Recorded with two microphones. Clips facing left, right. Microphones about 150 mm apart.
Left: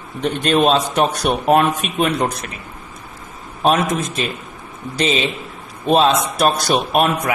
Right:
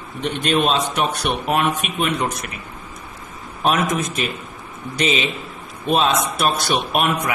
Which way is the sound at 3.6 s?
30° left (ahead or behind).